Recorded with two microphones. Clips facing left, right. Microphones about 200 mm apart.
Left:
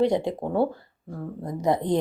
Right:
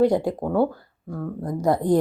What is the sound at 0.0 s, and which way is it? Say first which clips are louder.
A woman's voice: right 3 dB; 20° left (ahead or behind).